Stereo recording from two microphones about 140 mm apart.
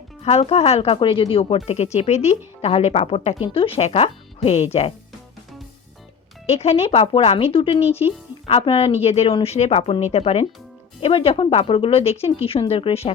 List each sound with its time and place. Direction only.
0.2 s a woman's voice: 45° left (ahead or behind)
6.5 s a woman's voice: 50° left (ahead or behind)